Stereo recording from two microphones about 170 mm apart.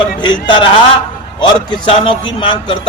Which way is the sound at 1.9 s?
30° left (ahead or behind).